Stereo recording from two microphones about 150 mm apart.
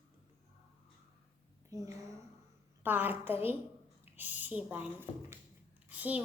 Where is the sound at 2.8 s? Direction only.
15° right (ahead or behind).